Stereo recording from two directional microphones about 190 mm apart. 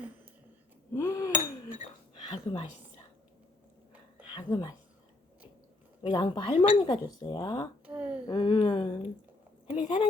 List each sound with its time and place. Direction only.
0.9 s chink: 15° left (ahead or behind)
1.3 s chink: 40° left (ahead or behind)
2.3 s speech: 30° left (ahead or behind)
4.4 s speech: 25° left (ahead or behind)
6.0 s speech: 25° left (ahead or behind)
7.9 s a sound: 10° right (ahead or behind)
8.3 s speech: 25° left (ahead or behind)